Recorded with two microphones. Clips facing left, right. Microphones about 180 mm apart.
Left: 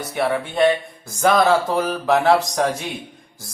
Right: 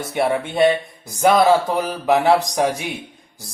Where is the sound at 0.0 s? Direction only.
25° right (ahead or behind).